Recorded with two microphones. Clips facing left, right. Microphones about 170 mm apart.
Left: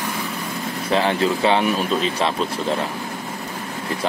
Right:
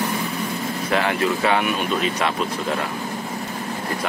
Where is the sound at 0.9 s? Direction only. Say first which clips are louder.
Left 2 dB; 30° left (ahead or behind).